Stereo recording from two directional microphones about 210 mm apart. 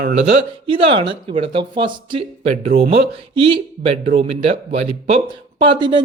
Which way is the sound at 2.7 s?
45° right (ahead or behind).